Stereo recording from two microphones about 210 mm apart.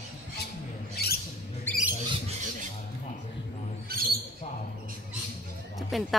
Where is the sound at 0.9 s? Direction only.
50° left (ahead or behind).